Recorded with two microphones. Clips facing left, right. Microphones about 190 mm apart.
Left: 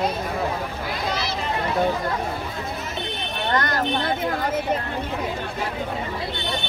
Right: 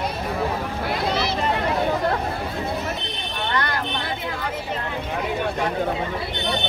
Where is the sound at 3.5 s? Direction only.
45° left (ahead or behind).